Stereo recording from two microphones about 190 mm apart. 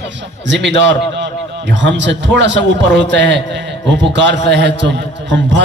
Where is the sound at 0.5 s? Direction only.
70° right (ahead or behind).